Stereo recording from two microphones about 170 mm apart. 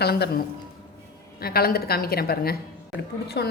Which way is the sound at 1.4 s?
65° left (ahead or behind).